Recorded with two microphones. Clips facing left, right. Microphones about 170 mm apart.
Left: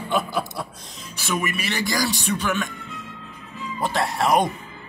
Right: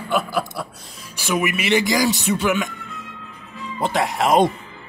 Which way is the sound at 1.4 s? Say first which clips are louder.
Right 8 dB; 20° right (ahead or behind).